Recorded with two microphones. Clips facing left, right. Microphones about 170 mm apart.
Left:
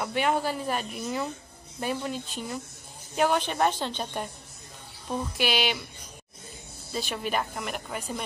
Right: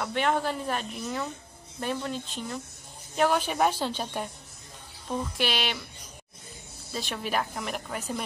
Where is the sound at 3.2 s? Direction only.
5° right (ahead or behind).